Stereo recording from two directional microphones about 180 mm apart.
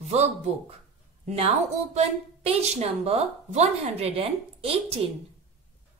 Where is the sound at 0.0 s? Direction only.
35° right (ahead or behind).